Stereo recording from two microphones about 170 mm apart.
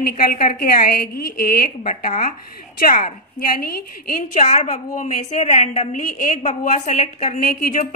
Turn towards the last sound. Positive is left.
turn(degrees=50)  # may be behind; listen again after turning